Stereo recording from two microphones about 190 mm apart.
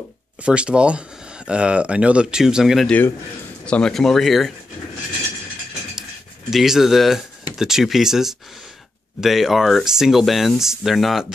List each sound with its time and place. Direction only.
0.4 s speech: 5° right (ahead or behind)
6.5 s speech: centre (ahead or behind)